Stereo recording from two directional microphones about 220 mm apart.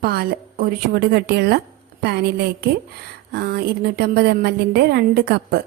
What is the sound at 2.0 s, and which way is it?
A woman's voice, 45° right (ahead or behind).